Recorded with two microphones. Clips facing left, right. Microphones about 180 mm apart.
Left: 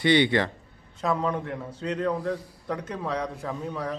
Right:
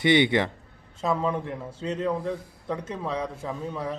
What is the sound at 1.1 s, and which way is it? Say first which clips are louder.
Speech: right 1 dB; 5° right (ahead or behind).